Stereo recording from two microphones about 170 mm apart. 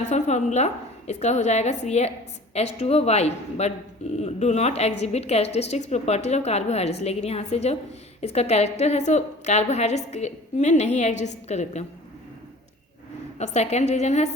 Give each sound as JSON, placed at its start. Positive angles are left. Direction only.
{"t": 0.1, "sound": "a woman's voice", "side_deg": 45}
{"t": 13.4, "sound": "a woman's voice", "side_deg": 40}